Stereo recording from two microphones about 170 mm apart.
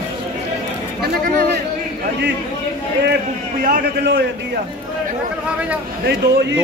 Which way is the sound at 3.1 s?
60° right (ahead or behind).